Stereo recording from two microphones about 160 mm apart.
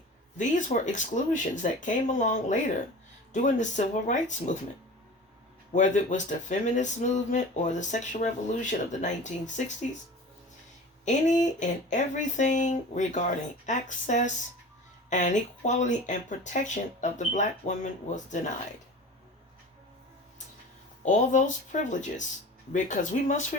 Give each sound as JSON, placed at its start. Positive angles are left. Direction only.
{"t": 0.3, "sound": "speech", "side_deg": 50}
{"t": 5.7, "sound": "speech", "side_deg": 50}
{"t": 11.0, "sound": "speech", "side_deg": 50}
{"t": 21.0, "sound": "speech", "side_deg": 50}